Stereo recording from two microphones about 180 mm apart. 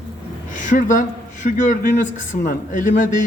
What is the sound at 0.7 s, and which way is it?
A man's voice, 45° left (ahead or behind).